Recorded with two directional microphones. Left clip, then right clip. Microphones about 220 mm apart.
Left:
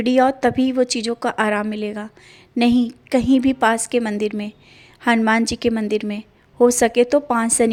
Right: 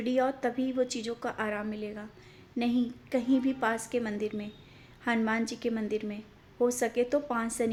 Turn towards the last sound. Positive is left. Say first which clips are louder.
# left 13 dB
turn(degrees=40)  # may be behind; listen again after turning